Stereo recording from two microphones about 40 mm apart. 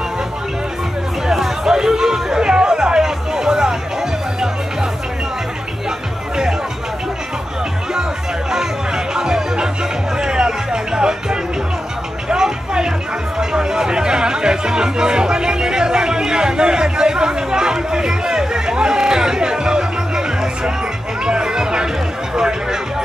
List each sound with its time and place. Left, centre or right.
1.2 s chatter: centre
8.5 s music: centre
12.3 s a sound: centre
13.4 s music: centre